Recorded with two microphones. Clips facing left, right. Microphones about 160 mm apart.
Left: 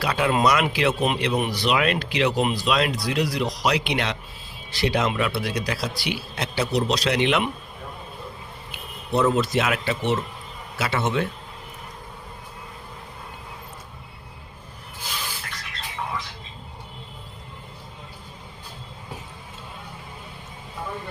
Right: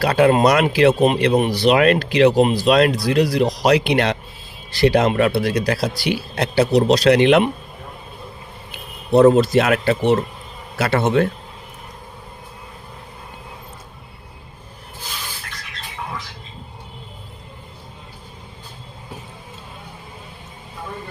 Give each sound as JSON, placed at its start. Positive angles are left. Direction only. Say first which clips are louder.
{"t": 0.0, "sound": "speech", "louder": "right 7 dB", "side_deg": -50}
{"t": 1.7, "sound": "speech", "louder": "right 7 dB", "side_deg": -45}
{"t": 9.1, "sound": "speech", "louder": "right 9 dB", "side_deg": -35}
{"t": 9.6, "sound": "speech", "louder": "right 7 dB", "side_deg": -50}
{"t": 10.8, "sound": "a man's voice", "louder": "right 7 dB", "side_deg": -55}